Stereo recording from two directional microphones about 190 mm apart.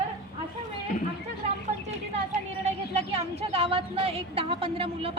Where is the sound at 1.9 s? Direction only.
35° right (ahead or behind).